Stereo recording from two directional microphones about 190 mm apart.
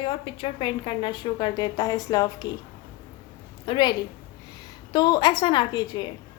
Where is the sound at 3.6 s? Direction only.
25° left (ahead or behind).